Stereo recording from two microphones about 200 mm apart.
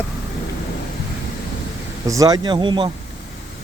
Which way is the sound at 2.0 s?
15° right (ahead or behind).